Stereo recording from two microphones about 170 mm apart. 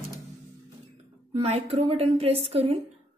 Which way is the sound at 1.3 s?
35° right (ahead or behind).